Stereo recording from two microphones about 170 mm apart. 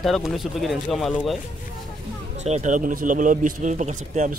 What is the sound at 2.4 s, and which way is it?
Speech, 45° right (ahead or behind).